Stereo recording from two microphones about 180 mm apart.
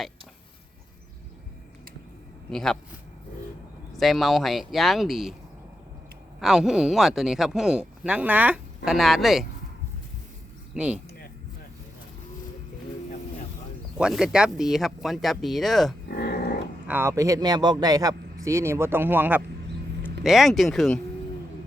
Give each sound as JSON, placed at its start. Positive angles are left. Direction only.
{"t": 2.5, "sound": "speech", "side_deg": 5}
{"t": 3.9, "sound": "speech", "side_deg": 0}
{"t": 6.4, "sound": "speech", "side_deg": -5}
{"t": 10.8, "sound": "speech", "side_deg": -5}
{"t": 14.0, "sound": "speech", "side_deg": -5}
{"t": 16.1, "sound": "a sound", "side_deg": 60}
{"t": 16.9, "sound": "speech", "side_deg": -15}